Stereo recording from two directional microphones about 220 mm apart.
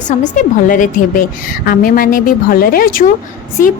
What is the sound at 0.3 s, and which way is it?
A woman's voice, 35° left (ahead or behind).